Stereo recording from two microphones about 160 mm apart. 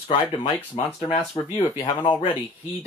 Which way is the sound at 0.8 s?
35° left (ahead or behind).